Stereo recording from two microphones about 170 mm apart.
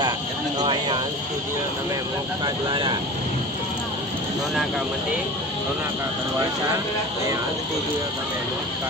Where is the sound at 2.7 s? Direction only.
30° right (ahead or behind).